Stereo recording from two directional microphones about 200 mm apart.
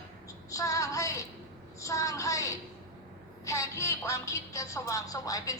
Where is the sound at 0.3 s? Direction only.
15° left (ahead or behind).